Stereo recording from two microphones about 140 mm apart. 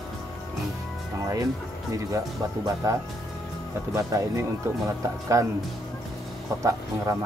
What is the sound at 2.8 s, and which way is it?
Speech, 25° right (ahead or behind).